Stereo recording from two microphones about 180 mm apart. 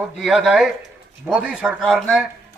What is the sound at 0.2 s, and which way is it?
A man's voice, centre (ahead or behind).